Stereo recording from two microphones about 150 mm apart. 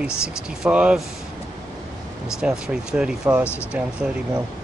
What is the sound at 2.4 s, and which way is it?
Speech, 5° right (ahead or behind).